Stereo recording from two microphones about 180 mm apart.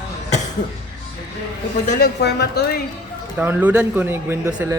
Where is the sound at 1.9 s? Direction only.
60° left (ahead or behind).